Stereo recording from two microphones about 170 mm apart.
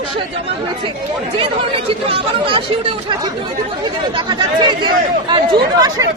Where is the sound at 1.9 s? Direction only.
35° right (ahead or behind).